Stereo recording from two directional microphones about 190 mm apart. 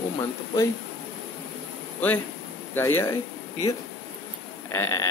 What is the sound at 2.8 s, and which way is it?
Speech, 10° left (ahead or behind).